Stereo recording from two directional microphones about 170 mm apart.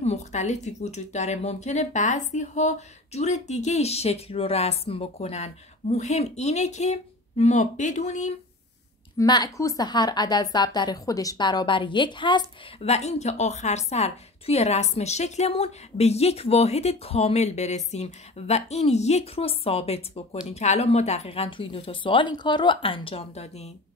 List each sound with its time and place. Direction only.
0.0 s speech: 40° left (ahead or behind)
9.2 s speech: 25° left (ahead or behind)
12.9 s speech: 40° left (ahead or behind)